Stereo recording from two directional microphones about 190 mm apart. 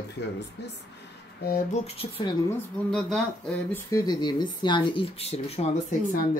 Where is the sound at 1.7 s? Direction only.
30° left (ahead or behind).